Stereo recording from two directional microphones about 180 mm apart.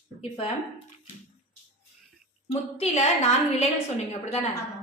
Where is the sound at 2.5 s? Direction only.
35° left (ahead or behind).